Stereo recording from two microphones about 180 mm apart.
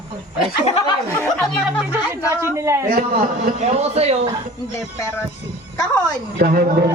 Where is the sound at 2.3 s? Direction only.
15° right (ahead or behind).